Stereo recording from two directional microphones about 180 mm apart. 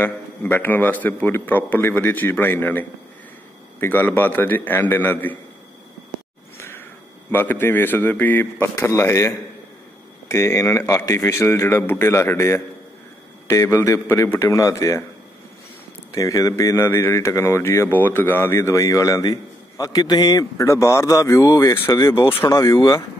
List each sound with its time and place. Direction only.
0.0 s speech: 10° left (ahead or behind)
7.2 s speech: 10° left (ahead or behind)
10.3 s speech: 15° left (ahead or behind)
16.1 s speech: 20° left (ahead or behind)
22.4 s speech: 15° left (ahead or behind)